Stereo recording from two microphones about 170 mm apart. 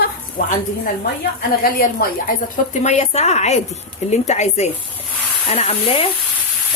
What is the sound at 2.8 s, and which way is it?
A woman's voice, 40° left (ahead or behind).